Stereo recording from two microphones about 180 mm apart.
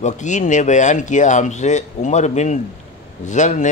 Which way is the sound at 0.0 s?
45° left (ahead or behind).